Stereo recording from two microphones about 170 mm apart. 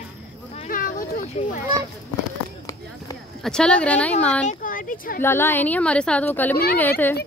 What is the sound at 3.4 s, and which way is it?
A woman's voice, 5° left (ahead or behind).